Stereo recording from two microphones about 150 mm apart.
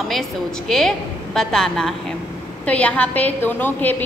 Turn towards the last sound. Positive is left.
turn(degrees=10)  # may be behind; listen again after turning